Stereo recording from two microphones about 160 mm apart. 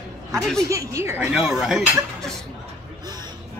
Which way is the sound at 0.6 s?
20° right (ahead or behind).